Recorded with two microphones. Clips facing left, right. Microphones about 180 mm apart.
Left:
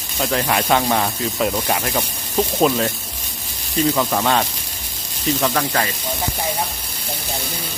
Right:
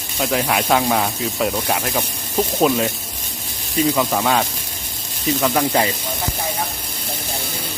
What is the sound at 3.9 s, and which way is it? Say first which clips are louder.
Speech: even; centre (ahead or behind).